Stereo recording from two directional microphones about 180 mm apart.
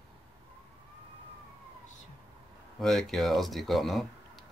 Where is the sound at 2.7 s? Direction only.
Centre (ahead or behind).